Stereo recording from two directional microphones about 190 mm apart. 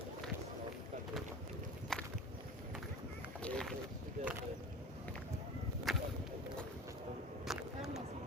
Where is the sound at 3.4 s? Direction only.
5° left (ahead or behind).